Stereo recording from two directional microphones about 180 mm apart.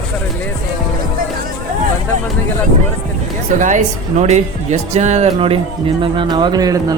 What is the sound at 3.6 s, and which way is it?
Speech, 40° right (ahead or behind).